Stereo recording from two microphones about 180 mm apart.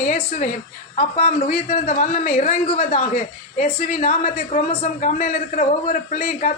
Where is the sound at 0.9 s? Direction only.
35° left (ahead or behind).